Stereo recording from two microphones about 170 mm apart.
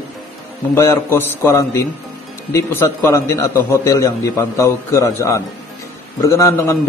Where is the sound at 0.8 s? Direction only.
15° left (ahead or behind).